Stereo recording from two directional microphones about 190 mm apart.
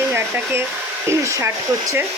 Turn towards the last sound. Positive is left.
turn(degrees=-15)  # may be behind; listen again after turning